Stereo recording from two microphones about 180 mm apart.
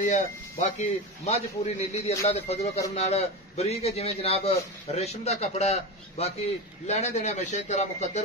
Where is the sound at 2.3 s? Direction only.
35° left (ahead or behind).